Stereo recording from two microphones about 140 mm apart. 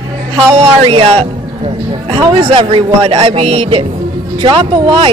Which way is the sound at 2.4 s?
40° right (ahead or behind).